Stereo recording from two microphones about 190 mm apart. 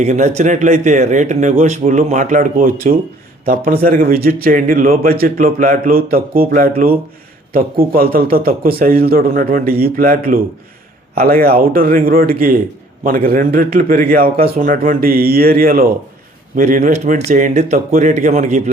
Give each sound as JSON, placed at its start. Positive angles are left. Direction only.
{"t": 0.0, "sound": "a man's voice", "side_deg": -40}